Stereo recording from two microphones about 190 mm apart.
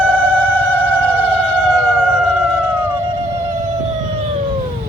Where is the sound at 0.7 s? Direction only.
10° left (ahead or behind).